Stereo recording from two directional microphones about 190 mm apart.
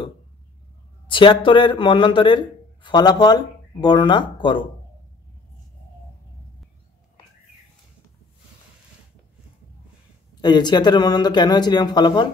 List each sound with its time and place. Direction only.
1.0 s speech: 25° left (ahead or behind)
10.4 s speech: 25° left (ahead or behind)